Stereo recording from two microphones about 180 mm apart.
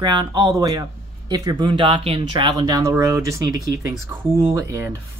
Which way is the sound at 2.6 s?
20° right (ahead or behind).